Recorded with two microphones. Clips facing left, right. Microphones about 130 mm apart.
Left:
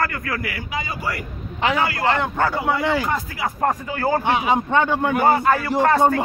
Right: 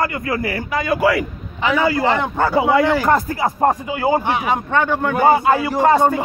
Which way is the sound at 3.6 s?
25° right (ahead or behind).